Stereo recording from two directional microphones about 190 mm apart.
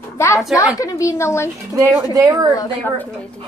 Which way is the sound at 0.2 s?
15° left (ahead or behind).